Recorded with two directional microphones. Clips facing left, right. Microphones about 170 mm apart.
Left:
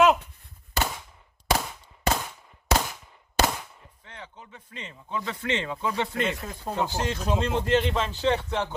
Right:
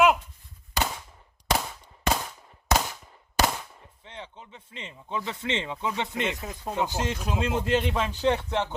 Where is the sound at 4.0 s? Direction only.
25° right (ahead or behind).